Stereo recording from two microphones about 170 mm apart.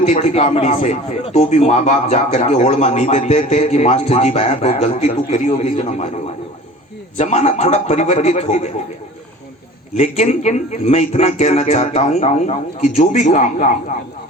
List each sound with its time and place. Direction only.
0.0 s a man's voice: 45° left (ahead or behind)
7.2 s a man's voice: 40° left (ahead or behind)
10.0 s a man's voice: 45° left (ahead or behind)